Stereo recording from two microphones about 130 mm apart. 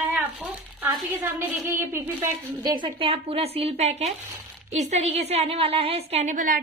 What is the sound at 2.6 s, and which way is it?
A woman's voice, 35° right (ahead or behind).